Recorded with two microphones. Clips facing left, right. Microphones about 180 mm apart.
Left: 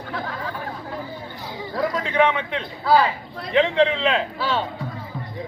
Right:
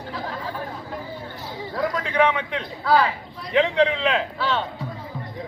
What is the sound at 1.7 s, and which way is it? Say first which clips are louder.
A man's voice: left 1 dB; centre (ahead or behind).